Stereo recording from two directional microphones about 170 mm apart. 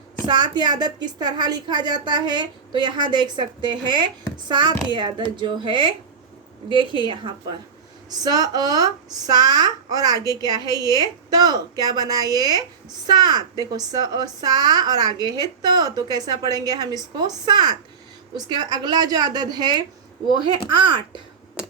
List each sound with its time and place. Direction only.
0.3 s a woman's voice: 25° right (ahead or behind)